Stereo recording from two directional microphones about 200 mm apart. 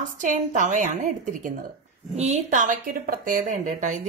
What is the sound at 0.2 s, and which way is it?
A woman's voice, 40° right (ahead or behind).